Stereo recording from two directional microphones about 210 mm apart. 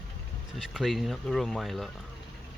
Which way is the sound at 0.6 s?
Centre (ahead or behind).